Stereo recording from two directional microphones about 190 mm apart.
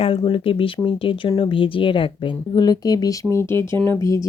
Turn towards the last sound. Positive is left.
turn(degrees=15)  # may be behind; listen again after turning